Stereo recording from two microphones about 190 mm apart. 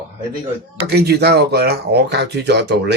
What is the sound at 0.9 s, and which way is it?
Speech, 60° right (ahead or behind).